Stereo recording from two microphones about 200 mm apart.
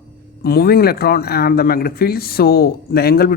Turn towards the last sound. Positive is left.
turn(degrees=50)  # may be behind; listen again after turning